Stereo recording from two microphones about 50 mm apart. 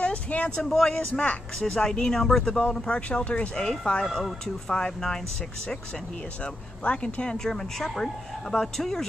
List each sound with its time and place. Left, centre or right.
0.0 s a sound: left
0.6 s speech: centre
0.9 s speech: left
1.6 s speech: centre
3.1 s speech: left
4.0 s speech: centre
6.4 s speech: left; by 9.0 s centre